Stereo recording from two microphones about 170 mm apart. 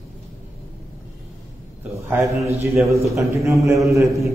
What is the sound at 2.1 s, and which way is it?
A man's voice, 15° right (ahead or behind).